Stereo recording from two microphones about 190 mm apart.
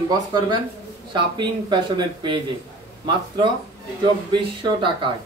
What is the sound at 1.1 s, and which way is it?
Speech, 25° right (ahead or behind).